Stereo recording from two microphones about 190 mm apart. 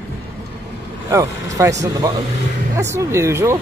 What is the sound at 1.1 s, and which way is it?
Speech, 15° right (ahead or behind).